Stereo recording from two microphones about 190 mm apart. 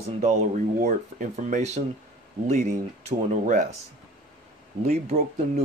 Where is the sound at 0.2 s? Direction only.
40° right (ahead or behind).